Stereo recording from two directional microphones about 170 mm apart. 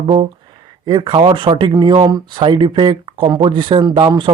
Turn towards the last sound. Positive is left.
turn(degrees=-25)  # may be behind; listen again after turning